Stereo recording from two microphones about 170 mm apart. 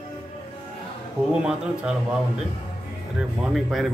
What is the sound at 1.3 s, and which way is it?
Speech, 5° right (ahead or behind).